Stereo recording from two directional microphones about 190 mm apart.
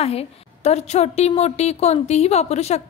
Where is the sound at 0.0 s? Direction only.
30° left (ahead or behind).